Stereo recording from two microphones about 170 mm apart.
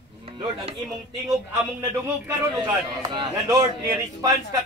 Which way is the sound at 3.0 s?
20° right (ahead or behind).